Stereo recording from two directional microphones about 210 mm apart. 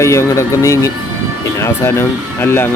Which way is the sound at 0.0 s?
15° left (ahead or behind).